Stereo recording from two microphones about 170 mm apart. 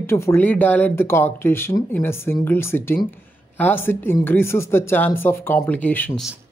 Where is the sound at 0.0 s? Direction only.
15° left (ahead or behind).